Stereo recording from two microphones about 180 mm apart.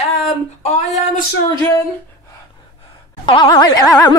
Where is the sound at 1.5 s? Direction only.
20° left (ahead or behind).